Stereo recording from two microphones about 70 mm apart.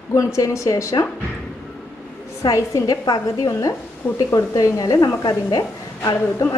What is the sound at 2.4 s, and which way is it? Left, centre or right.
A woman's voice, left.